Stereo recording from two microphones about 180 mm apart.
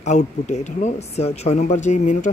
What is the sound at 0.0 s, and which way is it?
Speech, 40° left (ahead or behind).